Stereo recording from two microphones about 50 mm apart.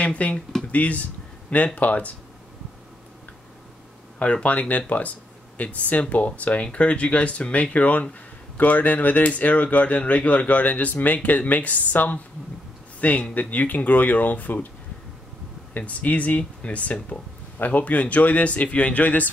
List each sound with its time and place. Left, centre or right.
0.0 s speech: left
4.2 s speech: left
15.7 s speech: left